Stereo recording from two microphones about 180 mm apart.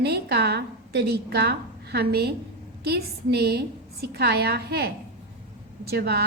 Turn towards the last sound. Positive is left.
turn(degrees=-60)  # may be behind; listen again after turning